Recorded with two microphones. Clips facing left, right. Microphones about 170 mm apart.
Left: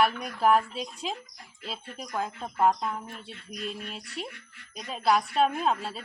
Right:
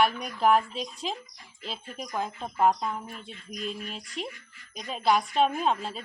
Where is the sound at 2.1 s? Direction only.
Centre (ahead or behind).